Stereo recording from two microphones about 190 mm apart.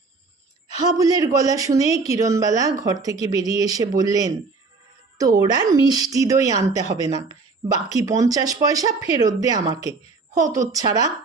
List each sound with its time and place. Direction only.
0.8 s speech: 20° right (ahead or behind)
5.5 s speech: 20° right (ahead or behind)